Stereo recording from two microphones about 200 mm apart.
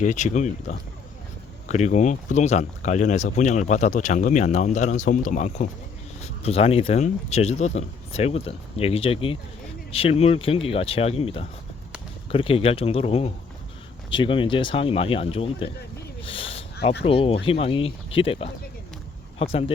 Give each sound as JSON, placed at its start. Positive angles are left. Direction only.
{"t": 0.0, "sound": "speech", "side_deg": 35}
{"t": 16.2, "sound": "a sound", "side_deg": 25}
{"t": 17.0, "sound": "speech", "side_deg": 30}